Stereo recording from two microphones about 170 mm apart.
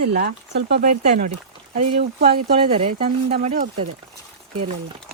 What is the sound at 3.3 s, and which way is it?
Speech, 45° right (ahead or behind).